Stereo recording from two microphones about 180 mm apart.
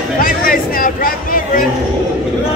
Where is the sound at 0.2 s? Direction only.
50° left (ahead or behind).